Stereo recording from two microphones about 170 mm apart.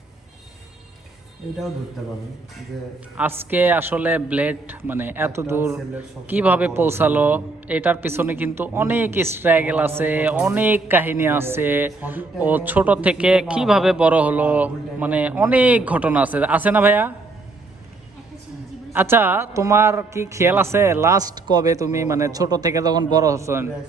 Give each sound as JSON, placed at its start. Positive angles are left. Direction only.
{"t": 3.2, "sound": "a man's voice", "side_deg": -10}
{"t": 18.9, "sound": "a man's voice", "side_deg": -10}